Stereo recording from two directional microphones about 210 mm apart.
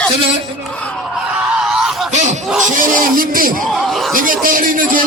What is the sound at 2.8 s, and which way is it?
Speech, 40° right (ahead or behind).